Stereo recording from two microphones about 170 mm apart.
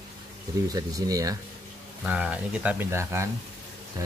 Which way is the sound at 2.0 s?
5° right (ahead or behind).